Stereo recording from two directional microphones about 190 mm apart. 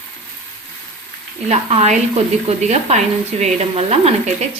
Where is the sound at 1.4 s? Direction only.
35° right (ahead or behind).